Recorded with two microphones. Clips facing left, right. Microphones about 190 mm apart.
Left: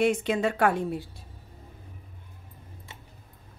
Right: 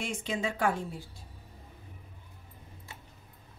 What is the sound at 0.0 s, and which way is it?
A woman's voice, 60° left (ahead or behind).